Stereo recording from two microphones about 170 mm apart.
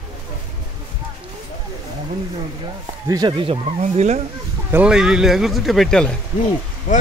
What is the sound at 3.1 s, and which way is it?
Speech, 25° right (ahead or behind).